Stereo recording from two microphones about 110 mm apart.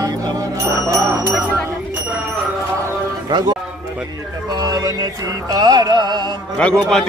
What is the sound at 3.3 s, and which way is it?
Speech, 40° right (ahead or behind).